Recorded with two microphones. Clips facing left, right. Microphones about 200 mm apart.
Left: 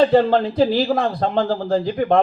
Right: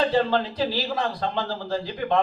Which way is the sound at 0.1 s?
50° left (ahead or behind).